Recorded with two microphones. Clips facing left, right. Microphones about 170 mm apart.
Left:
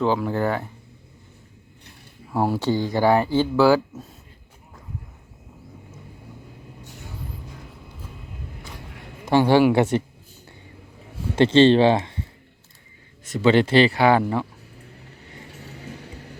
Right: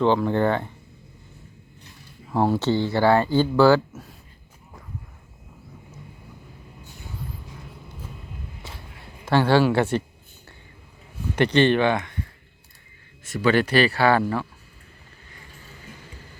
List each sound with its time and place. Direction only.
0.0 s speech: 5° left (ahead or behind)
2.3 s speech: 10° left (ahead or behind)
9.2 s speech: 15° left (ahead or behind)
11.3 s speech: 25° left (ahead or behind)
13.2 s speech: 20° left (ahead or behind)
15.4 s vehicle: 70° left (ahead or behind)